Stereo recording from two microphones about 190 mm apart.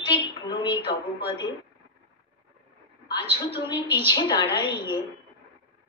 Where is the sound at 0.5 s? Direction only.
25° left (ahead or behind).